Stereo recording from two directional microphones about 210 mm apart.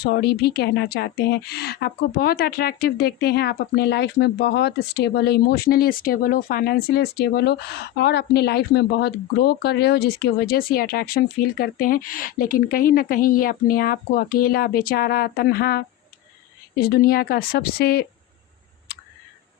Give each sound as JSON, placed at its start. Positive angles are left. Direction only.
{"t": 0.0, "sound": "a woman's voice", "side_deg": 50}